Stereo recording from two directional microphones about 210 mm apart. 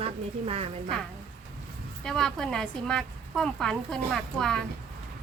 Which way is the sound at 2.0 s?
Centre (ahead or behind).